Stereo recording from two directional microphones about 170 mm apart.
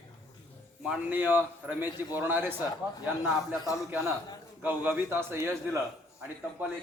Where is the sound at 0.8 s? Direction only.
5° right (ahead or behind).